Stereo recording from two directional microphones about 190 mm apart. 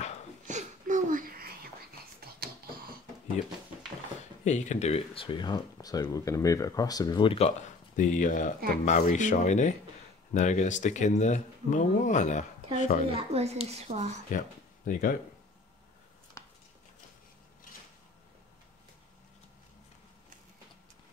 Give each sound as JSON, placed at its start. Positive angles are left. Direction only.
{"t": 0.5, "sound": "whispering", "side_deg": -40}
{"t": 4.5, "sound": "speech", "side_deg": 40}
{"t": 13.1, "sound": "speech", "side_deg": -35}
{"t": 14.9, "sound": "speech", "side_deg": 45}
{"t": 16.4, "sound": "a sound", "side_deg": 15}